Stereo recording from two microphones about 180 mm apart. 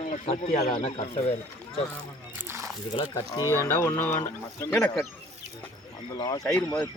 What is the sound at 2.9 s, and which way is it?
Speech, 25° left (ahead or behind).